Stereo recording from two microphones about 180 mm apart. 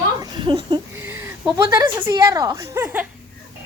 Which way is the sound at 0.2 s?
25° right (ahead or behind).